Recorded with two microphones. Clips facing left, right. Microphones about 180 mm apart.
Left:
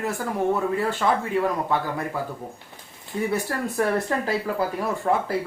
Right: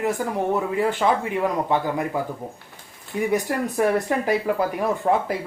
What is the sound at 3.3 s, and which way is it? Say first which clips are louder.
Speech: right 4 dB; 20° right (ahead or behind).